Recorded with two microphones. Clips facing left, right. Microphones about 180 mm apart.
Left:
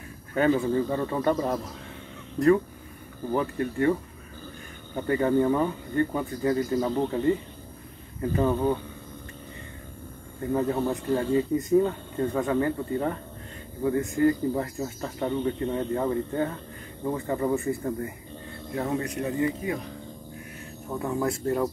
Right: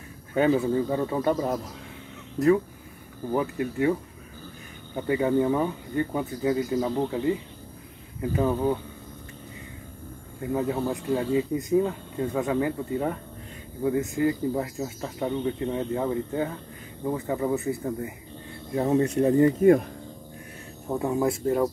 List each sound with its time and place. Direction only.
0.3 s speech: 10° right (ahead or behind)
4.9 s speech: 10° right (ahead or behind)
10.4 s speech: 5° right (ahead or behind)
18.8 s speech: 25° right (ahead or behind); by 19.9 s 50° right (ahead or behind)
20.9 s speech: 25° right (ahead or behind)